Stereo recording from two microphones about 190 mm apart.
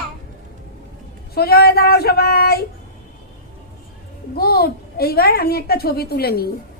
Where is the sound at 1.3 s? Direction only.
55° left (ahead or behind).